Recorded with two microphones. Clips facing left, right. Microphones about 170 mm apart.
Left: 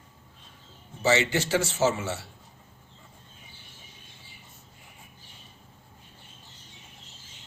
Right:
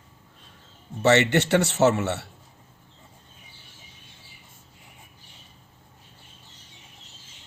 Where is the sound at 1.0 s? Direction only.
65° right (ahead or behind).